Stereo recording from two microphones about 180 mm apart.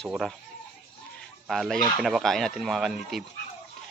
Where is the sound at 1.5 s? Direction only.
Centre (ahead or behind).